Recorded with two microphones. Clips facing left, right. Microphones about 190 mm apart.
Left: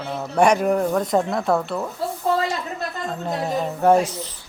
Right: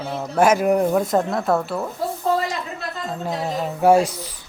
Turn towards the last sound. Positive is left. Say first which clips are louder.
# right 1 dB
turn(degrees=-10)  # may be behind; listen again after turning